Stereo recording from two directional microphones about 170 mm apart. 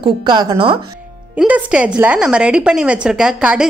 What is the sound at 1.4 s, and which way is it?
A woman's voice, 10° right (ahead or behind).